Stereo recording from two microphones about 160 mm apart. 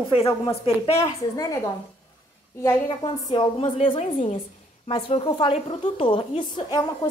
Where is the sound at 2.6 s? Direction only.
25° left (ahead or behind).